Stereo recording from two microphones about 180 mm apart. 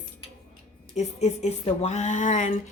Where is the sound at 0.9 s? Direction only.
35° left (ahead or behind).